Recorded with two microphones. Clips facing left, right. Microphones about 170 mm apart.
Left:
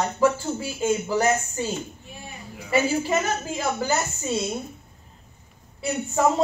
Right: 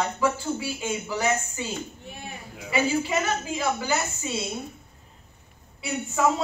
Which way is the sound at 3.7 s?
45° left (ahead or behind).